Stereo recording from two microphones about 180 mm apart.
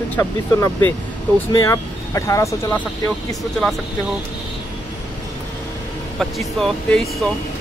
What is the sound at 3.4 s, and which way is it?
Speech, centre (ahead or behind).